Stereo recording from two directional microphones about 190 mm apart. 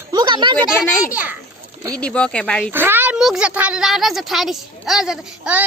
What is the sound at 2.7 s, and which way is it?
Speech, 10° right (ahead or behind).